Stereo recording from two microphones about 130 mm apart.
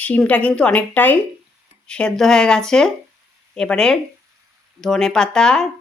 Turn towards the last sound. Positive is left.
turn(degrees=5)  # may be behind; listen again after turning